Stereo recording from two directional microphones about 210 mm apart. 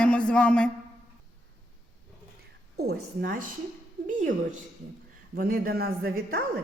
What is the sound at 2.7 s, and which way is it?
Speech, 50° right (ahead or behind).